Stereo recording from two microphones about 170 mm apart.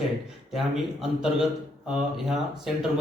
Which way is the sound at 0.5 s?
Centre (ahead or behind).